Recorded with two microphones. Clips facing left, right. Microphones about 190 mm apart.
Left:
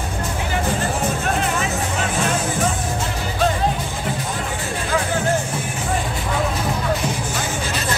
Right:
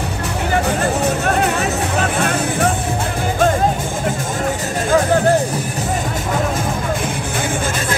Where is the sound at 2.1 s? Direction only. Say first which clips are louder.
Right 3 dB; 60° right (ahead or behind).